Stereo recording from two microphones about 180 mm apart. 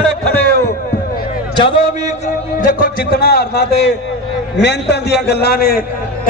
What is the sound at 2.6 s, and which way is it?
A man's voice, 50° left (ahead or behind).